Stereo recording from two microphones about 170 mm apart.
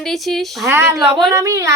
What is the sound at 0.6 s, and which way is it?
Speech, 15° right (ahead or behind).